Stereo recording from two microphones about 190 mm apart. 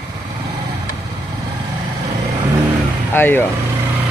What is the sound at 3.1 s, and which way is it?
Speech, 10° left (ahead or behind).